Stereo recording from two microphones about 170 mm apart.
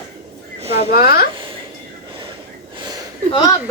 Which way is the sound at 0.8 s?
60° left (ahead or behind).